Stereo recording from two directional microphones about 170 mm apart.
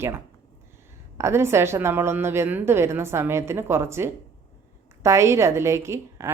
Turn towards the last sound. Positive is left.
turn(degrees=-15)  # may be behind; listen again after turning